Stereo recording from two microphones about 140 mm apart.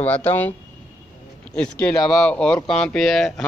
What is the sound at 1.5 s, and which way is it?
Speech, 10° left (ahead or behind).